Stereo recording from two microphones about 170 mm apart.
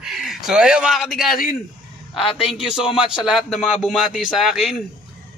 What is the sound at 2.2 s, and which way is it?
Speech, 30° left (ahead or behind).